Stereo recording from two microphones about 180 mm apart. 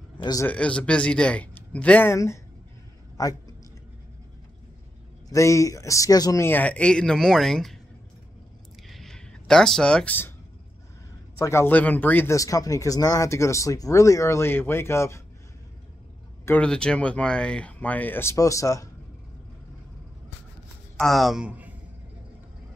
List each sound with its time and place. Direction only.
0.2 s speech: 20° left (ahead or behind)
0.5 s a woman's voice: 5° left (ahead or behind)
5.3 s speech: 15° left (ahead or behind)
8.8 s a sound: centre (ahead or behind)
11.3 s speech: 15° left (ahead or behind)
16.4 s speech: 5° left (ahead or behind)
21.0 s speech: centre (ahead or behind)